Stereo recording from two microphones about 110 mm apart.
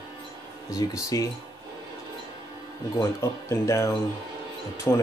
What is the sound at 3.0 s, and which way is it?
Speech, 25° left (ahead or behind).